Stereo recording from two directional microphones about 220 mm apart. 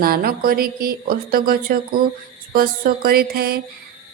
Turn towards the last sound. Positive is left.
turn(degrees=-45)  # may be behind; listen again after turning